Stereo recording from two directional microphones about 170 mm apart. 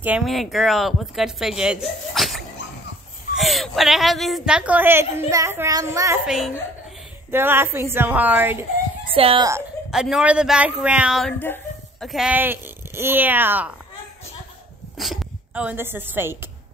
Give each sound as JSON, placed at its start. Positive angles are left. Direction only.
{"t": 0.0, "sound": "a woman's voice", "side_deg": -5}
{"t": 6.2, "sound": "speech", "side_deg": 0}
{"t": 7.2, "sound": "a woman's voice", "side_deg": -15}
{"t": 9.1, "sound": "a child's voice", "side_deg": -30}
{"t": 9.8, "sound": "speech", "side_deg": 0}
{"t": 11.3, "sound": "a sound", "side_deg": 10}
{"t": 12.1, "sound": "a woman's voice", "side_deg": -5}
{"t": 15.0, "sound": "speech", "side_deg": 0}